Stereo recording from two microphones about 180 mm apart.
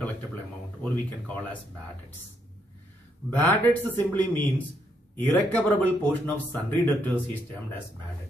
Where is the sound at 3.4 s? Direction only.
10° left (ahead or behind).